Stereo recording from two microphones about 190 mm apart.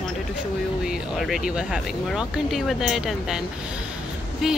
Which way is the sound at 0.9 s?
Centre (ahead or behind).